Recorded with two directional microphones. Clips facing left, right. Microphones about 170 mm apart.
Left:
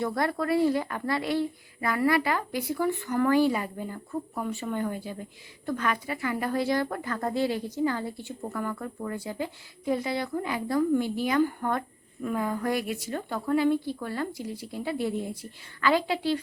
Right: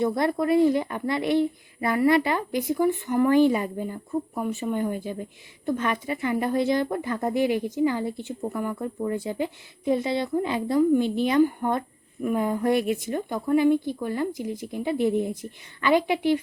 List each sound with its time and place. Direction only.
0.0 s a woman's voice: 20° right (ahead or behind)